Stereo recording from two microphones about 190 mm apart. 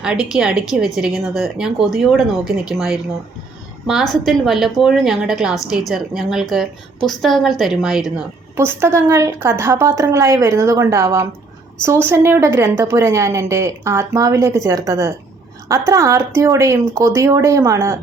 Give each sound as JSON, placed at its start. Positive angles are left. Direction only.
{"t": 0.0, "sound": "a woman's voice", "side_deg": -5}